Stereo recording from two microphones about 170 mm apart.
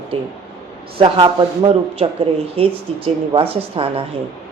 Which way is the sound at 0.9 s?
30° right (ahead or behind).